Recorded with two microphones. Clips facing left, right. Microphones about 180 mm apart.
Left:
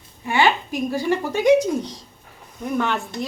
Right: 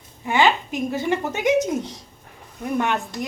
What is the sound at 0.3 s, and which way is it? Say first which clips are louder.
Speech: even; 15° right (ahead or behind).